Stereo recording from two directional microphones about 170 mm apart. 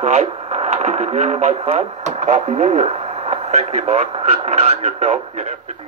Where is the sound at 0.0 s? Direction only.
45° right (ahead or behind).